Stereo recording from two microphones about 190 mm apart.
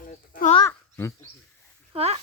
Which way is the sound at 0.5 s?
15° left (ahead or behind).